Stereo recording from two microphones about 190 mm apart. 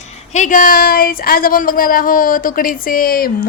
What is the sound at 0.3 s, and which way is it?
A woman's voice, 45° left (ahead or behind).